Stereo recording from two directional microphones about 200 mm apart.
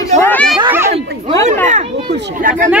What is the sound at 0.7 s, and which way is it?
Children playing, 10° right (ahead or behind).